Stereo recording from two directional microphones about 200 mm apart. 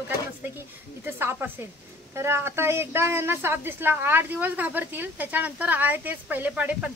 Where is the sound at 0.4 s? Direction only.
10° right (ahead or behind).